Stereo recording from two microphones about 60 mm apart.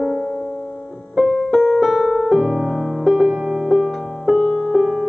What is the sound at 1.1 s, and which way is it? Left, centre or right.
Piano, centre.